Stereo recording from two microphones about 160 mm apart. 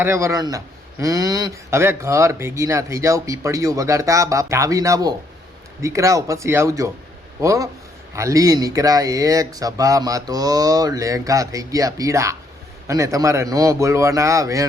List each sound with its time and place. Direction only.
0.0 s a man's voice: 15° right (ahead or behind)